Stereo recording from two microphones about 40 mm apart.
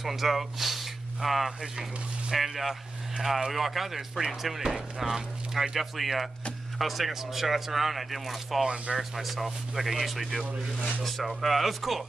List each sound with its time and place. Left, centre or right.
0.0 s speech: centre
1.6 s speech: centre
2.3 s speech: centre